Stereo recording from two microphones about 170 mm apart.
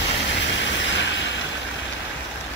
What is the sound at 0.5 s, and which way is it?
Train, 90° left.